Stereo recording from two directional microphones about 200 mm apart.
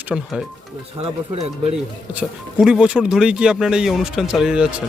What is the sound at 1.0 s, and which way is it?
Speech, 30° right (ahead or behind).